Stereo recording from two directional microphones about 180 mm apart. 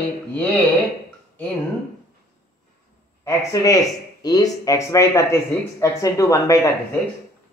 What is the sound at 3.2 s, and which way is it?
Speech, 20° left (ahead or behind).